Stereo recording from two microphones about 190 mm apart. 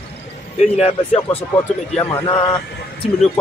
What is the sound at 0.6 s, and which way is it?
Speech, 35° left (ahead or behind).